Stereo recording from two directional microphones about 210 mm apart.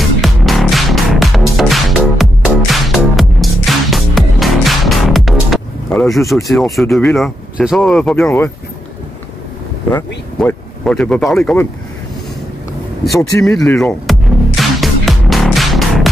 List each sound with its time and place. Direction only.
0.2 s music: centre (ahead or behind)
9.8 s speech: 5° left (ahead or behind)
13.0 s speech: centre (ahead or behind)
14.6 s music: centre (ahead or behind)